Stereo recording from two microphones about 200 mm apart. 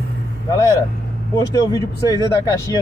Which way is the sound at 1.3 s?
20° left (ahead or behind).